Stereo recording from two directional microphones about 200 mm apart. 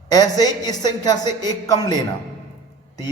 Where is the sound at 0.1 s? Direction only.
20° left (ahead or behind).